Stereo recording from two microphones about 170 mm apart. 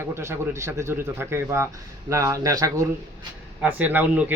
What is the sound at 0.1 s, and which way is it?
Speech, 15° right (ahead or behind).